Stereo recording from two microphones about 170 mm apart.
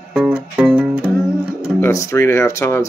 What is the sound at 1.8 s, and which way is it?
Speech, 15° left (ahead or behind).